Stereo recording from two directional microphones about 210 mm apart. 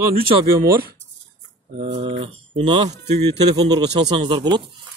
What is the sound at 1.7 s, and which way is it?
Speech, 30° right (ahead or behind).